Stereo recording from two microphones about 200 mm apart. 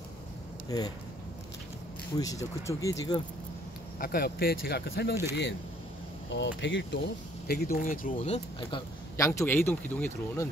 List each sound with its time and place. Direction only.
0.7 s speech: 20° left (ahead or behind)
2.1 s speech: 15° left (ahead or behind)
4.0 s speech: 50° left (ahead or behind)
7.4 s speech: 45° left (ahead or behind)
8.5 s speech: 20° left (ahead or behind)